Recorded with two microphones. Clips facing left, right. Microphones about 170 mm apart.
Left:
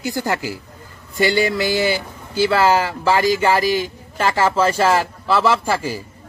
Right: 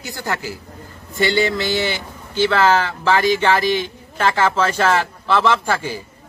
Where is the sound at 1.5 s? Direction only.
10° left (ahead or behind).